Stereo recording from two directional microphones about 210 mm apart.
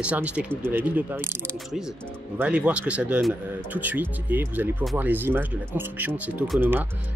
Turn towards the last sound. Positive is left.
turn(degrees=-10)  # may be behind; listen again after turning